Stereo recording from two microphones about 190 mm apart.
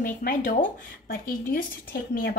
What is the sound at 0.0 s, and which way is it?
A woman's voice, 45° left (ahead or behind).